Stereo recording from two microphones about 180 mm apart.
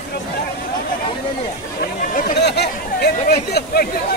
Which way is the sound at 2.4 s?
65° left (ahead or behind).